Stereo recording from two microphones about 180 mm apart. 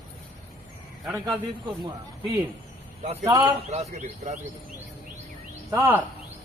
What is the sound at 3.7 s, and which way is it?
Speech, 35° right (ahead or behind).